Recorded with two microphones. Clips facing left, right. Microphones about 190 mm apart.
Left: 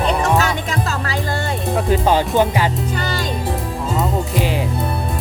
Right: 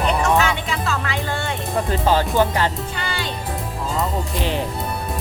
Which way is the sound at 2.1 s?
15° left (ahead or behind).